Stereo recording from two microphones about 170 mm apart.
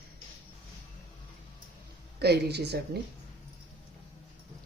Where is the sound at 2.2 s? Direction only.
75° right (ahead or behind).